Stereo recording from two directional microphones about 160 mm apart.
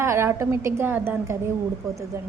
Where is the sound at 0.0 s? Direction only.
15° right (ahead or behind).